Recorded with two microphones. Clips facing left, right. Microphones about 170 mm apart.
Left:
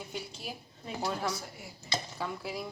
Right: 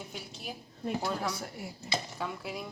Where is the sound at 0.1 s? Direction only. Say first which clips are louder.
Left 2 dB; centre (ahead or behind).